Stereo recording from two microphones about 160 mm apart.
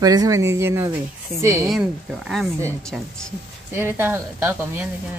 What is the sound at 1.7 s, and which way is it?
A woman's voice, 5° right (ahead or behind).